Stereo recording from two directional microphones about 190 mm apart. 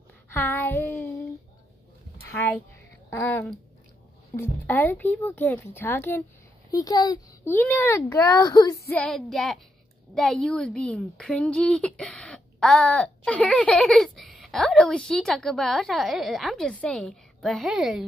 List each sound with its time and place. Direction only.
0.3 s a sound: 10° left (ahead or behind)
3.1 s a child's voice: 10° left (ahead or behind)
7.5 s speech: 10° left (ahead or behind)
8.9 s a woman's voice: 5° left (ahead or behind)